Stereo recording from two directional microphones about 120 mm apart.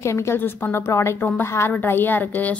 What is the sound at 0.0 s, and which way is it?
A woman's voice, 25° left (ahead or behind).